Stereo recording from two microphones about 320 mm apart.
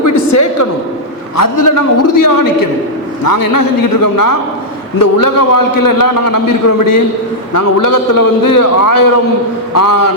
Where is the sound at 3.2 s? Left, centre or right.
Left.